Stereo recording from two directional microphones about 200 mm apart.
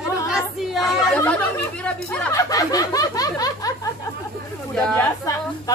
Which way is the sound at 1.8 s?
5° left (ahead or behind).